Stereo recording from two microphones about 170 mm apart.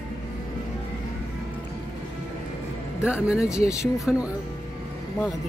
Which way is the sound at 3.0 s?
5° right (ahead or behind).